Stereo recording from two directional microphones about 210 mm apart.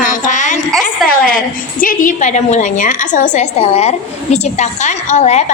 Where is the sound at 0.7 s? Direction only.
Centre (ahead or behind).